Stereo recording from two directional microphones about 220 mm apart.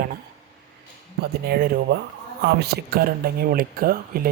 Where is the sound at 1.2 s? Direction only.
45° right (ahead or behind).